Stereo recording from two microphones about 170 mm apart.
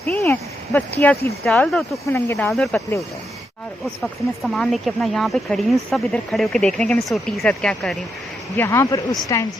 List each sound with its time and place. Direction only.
0.1 s a sound: 15° left (ahead or behind)
1.5 s speech: centre (ahead or behind)
4.5 s speech: centre (ahead or behind)
8.5 s speech: 15° left (ahead or behind)